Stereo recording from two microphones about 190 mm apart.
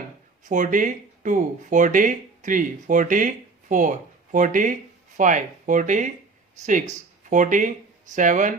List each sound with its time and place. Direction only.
0.4 s speech: 40° right (ahead or behind)
7.3 s speech: 40° right (ahead or behind)